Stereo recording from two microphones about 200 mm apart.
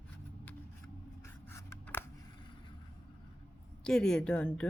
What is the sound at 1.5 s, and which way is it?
Scissors, 10° left (ahead or behind).